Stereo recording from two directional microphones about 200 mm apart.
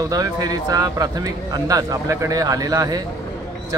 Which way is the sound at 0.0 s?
20° right (ahead or behind).